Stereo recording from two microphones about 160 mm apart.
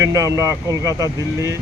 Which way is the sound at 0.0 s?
20° right (ahead or behind).